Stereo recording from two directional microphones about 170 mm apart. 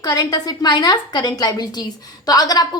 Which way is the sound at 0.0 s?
20° left (ahead or behind).